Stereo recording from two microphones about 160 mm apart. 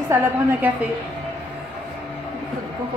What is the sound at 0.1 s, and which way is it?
Speech, 15° right (ahead or behind).